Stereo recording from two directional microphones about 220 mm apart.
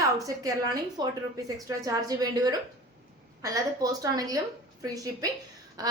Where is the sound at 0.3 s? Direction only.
15° right (ahead or behind).